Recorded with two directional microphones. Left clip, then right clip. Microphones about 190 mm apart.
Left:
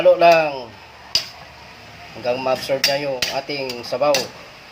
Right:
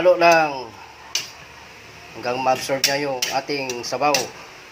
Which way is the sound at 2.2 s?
5° right (ahead or behind).